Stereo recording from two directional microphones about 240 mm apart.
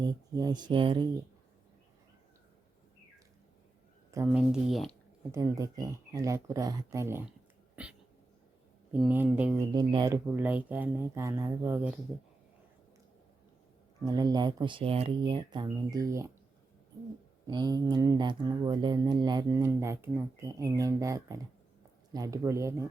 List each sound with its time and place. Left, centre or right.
0.0 s speech: centre
4.1 s speech: centre
5.3 s speech: centre
8.9 s speech: centre
9.7 s speech: centre
14.0 s speech: centre
17.4 s speech: centre